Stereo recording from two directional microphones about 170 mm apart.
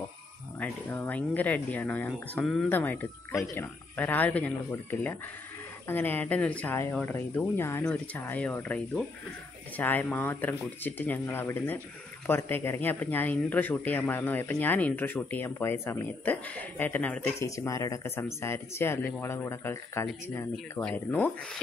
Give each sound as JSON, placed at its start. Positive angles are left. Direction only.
{"t": 0.6, "sound": "speech", "side_deg": 10}
{"t": 17.6, "sound": "speech", "side_deg": 20}